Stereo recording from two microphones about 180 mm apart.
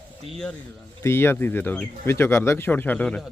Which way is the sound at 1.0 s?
15° left (ahead or behind).